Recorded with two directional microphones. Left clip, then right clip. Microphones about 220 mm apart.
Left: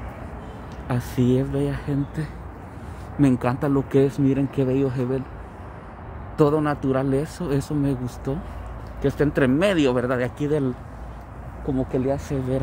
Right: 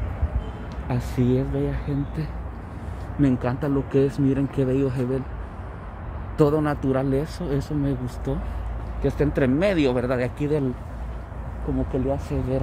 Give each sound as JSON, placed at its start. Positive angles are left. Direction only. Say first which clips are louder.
{"t": 0.8, "sound": "speech", "louder": "left 2 dB", "side_deg": 20}
{"t": 6.3, "sound": "speech", "louder": "left 1 dB", "side_deg": 15}
{"t": 12.1, "sound": "speech", "louder": "left 1 dB", "side_deg": 20}